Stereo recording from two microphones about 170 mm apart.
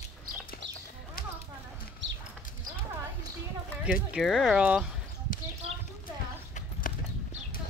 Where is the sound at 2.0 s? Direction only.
90° right.